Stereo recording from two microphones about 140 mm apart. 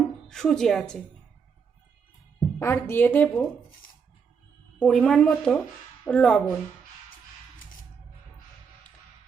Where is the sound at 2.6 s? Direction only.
20° left (ahead or behind).